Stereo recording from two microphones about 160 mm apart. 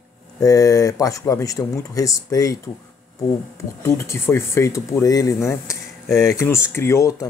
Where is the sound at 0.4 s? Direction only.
20° left (ahead or behind).